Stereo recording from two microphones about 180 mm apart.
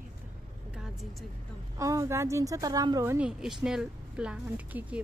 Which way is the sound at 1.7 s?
15° right (ahead or behind).